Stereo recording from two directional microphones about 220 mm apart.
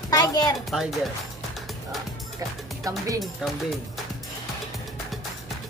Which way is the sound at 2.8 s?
15° right (ahead or behind).